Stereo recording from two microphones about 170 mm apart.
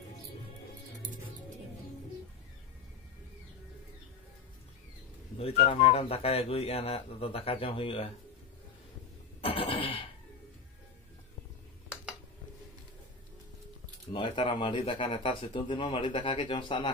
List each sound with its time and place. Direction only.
5.4 s speech: 35° left (ahead or behind)
9.4 s a sound: 35° left (ahead or behind)
14.1 s speech: 30° left (ahead or behind)